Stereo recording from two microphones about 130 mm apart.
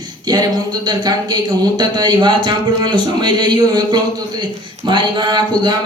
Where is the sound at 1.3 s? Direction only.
35° right (ahead or behind).